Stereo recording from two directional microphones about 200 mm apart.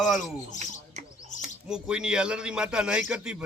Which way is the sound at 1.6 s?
5° right (ahead or behind).